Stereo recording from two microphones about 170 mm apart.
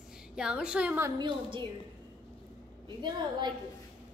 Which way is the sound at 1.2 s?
30° right (ahead or behind).